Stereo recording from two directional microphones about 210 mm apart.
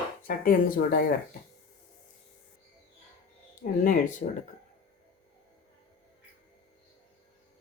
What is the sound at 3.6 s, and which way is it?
Speech, 40° left (ahead or behind).